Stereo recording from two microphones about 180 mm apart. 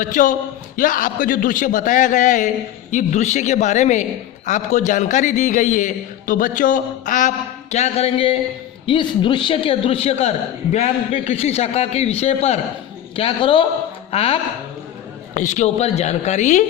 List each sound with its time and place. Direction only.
0.0 s a man's voice: 45° left (ahead or behind)
15.4 s a man's voice: 40° left (ahead or behind)